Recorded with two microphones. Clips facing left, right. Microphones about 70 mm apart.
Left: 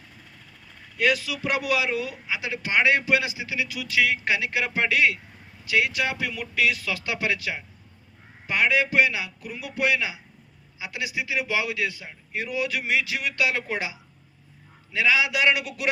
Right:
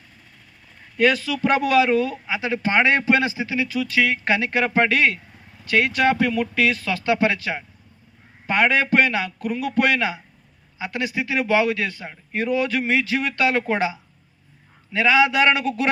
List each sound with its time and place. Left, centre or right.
0.9 s a man's voice: right
14.9 s speech: right